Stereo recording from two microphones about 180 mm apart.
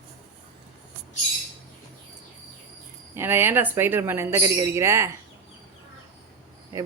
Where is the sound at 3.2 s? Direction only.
10° right (ahead or behind).